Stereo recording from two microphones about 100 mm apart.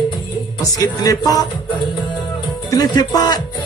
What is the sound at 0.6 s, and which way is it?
Music, 35° left (ahead or behind).